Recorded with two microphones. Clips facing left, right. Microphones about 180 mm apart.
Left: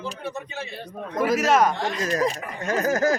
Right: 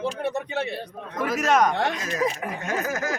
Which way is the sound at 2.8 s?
35° left (ahead or behind).